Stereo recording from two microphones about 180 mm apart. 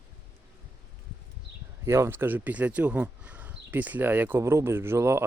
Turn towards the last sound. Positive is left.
turn(degrees=-15)  # may be behind; listen again after turning